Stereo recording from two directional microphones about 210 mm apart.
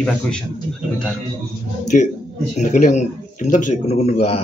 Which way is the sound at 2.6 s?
35° left (ahead or behind).